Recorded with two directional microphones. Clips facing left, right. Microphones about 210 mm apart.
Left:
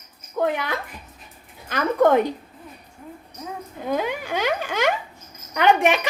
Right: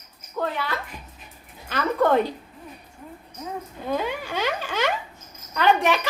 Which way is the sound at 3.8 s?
15° left (ahead or behind).